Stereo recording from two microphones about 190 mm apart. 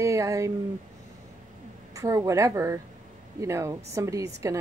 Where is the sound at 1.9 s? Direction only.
20° right (ahead or behind).